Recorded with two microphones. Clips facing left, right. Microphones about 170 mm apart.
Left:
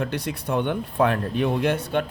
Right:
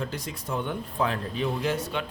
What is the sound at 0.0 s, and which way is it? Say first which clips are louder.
A man's voice: left 6 dB; 70° left (ahead or behind).